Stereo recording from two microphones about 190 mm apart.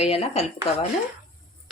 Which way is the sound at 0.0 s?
30° left (ahead or behind).